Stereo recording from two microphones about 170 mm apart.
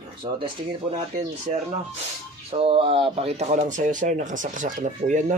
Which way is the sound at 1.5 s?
40° right (ahead or behind).